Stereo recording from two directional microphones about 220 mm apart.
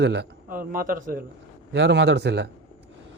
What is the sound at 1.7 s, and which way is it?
Speech, 50° right (ahead or behind).